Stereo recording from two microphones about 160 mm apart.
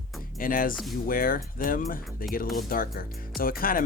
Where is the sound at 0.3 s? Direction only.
60° left (ahead or behind).